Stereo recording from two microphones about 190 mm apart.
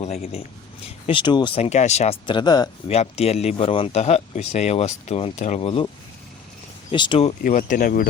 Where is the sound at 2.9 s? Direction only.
35° left (ahead or behind).